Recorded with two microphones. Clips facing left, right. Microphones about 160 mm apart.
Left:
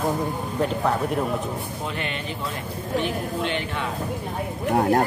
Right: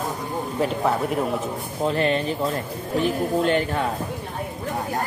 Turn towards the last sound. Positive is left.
turn(degrees=-40)  # may be behind; listen again after turning